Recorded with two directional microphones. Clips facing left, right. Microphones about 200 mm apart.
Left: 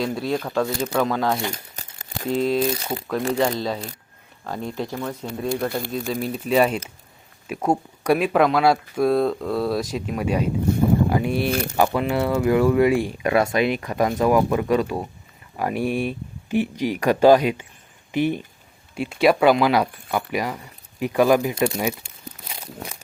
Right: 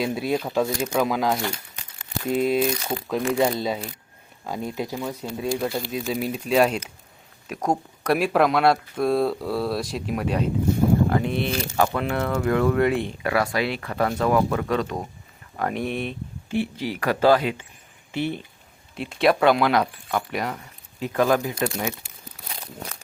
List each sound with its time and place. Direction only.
0.0 s speech: 10° right (ahead or behind)
5.5 s speech: 55° left (ahead or behind)
5.9 s speech: centre (ahead or behind)
11.5 s speech: 55° left (ahead or behind)
11.9 s speech: 5° left (ahead or behind)
13.2 s speech: 20° left (ahead or behind)
18.9 s speech: 5° left (ahead or behind)
21.0 s speech: 15° left (ahead or behind)